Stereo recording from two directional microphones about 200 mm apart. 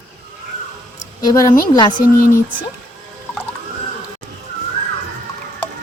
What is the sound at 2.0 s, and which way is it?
Speech, 45° left (ahead or behind).